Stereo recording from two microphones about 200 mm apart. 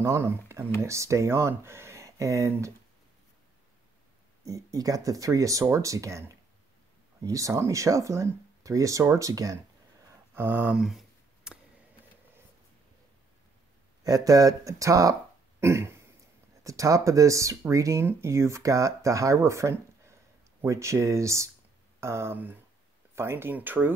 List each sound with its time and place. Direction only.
0.0 s speech: 15° right (ahead or behind)
4.5 s speech: 15° right (ahead or behind)
10.3 s a sound: 10° right (ahead or behind)
14.0 s speech: 20° right (ahead or behind)
15.6 s a sound: 15° right (ahead or behind)
16.6 s speech: 15° right (ahead or behind)